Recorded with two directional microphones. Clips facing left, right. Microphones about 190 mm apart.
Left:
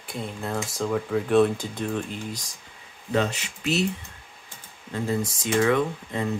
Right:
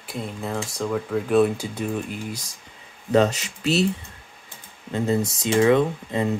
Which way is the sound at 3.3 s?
30° right (ahead or behind).